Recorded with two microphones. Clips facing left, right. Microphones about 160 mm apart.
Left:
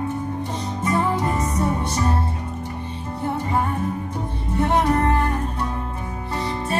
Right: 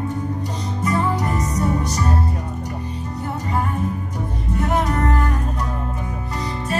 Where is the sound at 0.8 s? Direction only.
25° left (ahead or behind).